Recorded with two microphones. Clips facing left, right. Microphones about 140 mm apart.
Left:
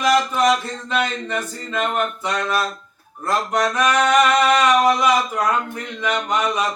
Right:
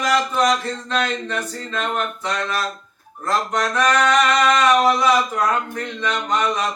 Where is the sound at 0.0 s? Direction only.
10° left (ahead or behind).